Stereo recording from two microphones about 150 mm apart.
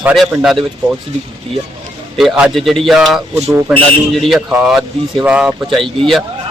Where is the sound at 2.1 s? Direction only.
5° right (ahead or behind).